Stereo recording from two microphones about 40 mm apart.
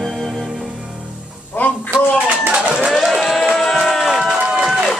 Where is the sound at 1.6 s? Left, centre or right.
Left.